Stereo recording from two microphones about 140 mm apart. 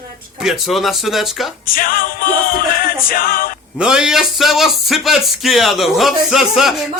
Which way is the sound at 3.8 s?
5° right (ahead or behind).